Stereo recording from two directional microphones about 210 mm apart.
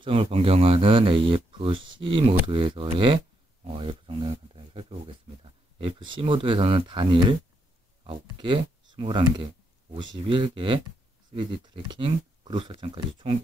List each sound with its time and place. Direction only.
0.0 s speech: 25° right (ahead or behind)